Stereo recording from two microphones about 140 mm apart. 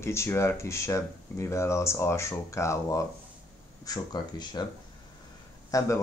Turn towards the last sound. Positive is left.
turn(degrees=25)  # may be behind; listen again after turning